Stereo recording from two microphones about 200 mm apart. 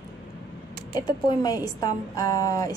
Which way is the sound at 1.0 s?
20° left (ahead or behind).